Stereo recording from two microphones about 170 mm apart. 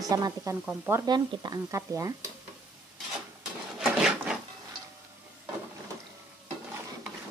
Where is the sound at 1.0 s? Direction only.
25° right (ahead or behind).